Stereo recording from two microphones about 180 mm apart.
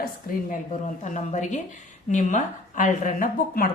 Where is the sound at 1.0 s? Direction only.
45° left (ahead or behind).